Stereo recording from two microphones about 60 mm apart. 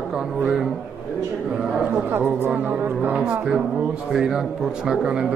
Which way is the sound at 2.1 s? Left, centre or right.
Right.